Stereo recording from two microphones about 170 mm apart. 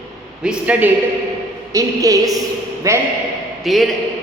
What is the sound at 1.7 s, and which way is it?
A woman's voice, 20° right (ahead or behind).